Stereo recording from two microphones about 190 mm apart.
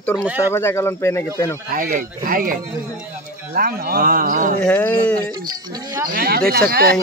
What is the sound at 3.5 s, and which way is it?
Speech, 50° right (ahead or behind).